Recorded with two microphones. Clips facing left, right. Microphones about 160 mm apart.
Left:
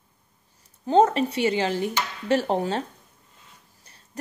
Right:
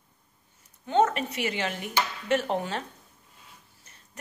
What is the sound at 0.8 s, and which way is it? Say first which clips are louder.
Speech: left 5 dB; 35° left (ahead or behind).